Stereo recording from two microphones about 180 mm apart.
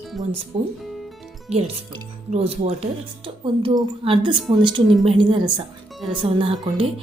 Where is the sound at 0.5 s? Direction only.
30° right (ahead or behind).